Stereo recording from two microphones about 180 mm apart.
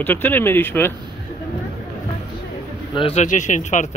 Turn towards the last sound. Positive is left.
turn(degrees=40)  # may be behind; listen again after turning